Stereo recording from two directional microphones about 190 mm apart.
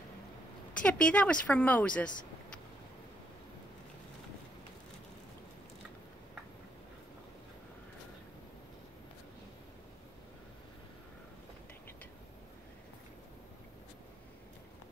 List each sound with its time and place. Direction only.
0.8 s speech: 5° left (ahead or behind)